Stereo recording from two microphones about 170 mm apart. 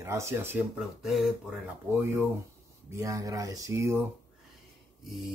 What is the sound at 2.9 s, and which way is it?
Speech, 20° right (ahead or behind).